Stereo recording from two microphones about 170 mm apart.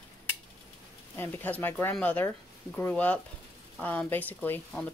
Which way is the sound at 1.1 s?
10° left (ahead or behind).